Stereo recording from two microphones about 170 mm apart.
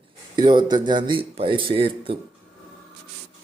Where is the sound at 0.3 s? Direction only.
25° right (ahead or behind).